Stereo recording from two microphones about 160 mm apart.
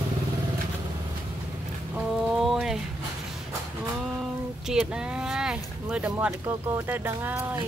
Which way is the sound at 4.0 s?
Centre (ahead or behind).